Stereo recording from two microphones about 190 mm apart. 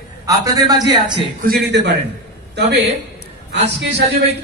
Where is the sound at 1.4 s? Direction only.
55° right (ahead or behind).